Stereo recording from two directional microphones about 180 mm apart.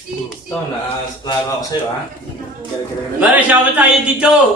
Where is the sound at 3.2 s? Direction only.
10° right (ahead or behind).